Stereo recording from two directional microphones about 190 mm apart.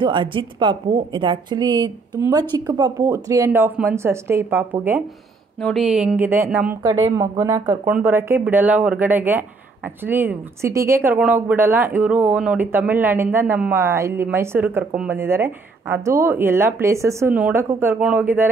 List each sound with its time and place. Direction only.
0.0 s a woman's voice: 25° right (ahead or behind); by 18.5 s 10° right (ahead or behind)